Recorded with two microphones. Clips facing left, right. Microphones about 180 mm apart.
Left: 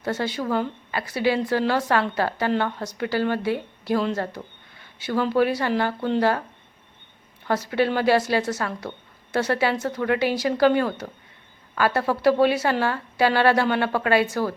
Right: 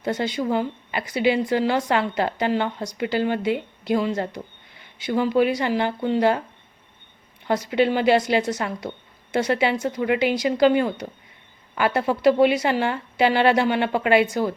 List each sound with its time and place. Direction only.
0.0 s a woman's voice: 15° right (ahead or behind)
7.4 s a woman's voice: 15° right (ahead or behind)